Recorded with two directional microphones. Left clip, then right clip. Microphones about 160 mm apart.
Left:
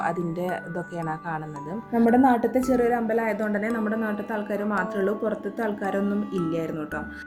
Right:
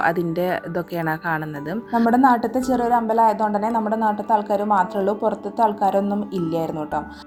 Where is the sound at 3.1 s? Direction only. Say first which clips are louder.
Right 8 dB; 25° right (ahead or behind).